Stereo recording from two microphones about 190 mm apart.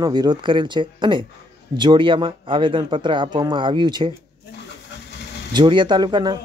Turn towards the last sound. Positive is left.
turn(degrees=-25)  # may be behind; listen again after turning